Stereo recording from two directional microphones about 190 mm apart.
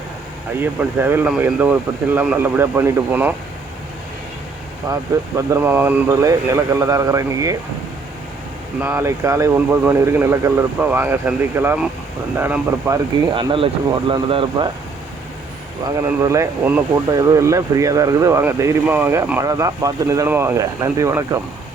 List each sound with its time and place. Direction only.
0.6 s speech: 10° right (ahead or behind)
4.9 s speech: 15° right (ahead or behind)
8.8 s speech: 10° right (ahead or behind)
13.3 s speech: 25° right (ahead or behind)
16.0 s speech: 15° right (ahead or behind)